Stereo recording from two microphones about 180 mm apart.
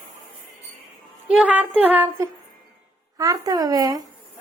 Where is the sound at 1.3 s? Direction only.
5° right (ahead or behind).